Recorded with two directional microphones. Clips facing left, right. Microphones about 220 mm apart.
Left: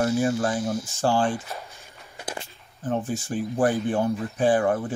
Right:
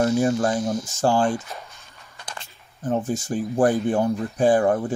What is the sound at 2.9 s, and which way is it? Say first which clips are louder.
Speech: right 3 dB; 40° right (ahead or behind).